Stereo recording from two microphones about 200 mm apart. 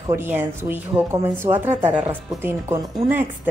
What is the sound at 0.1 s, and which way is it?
A woman's voice, 10° right (ahead or behind).